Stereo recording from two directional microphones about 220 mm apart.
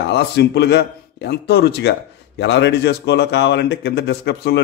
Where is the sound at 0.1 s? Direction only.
50° left (ahead or behind).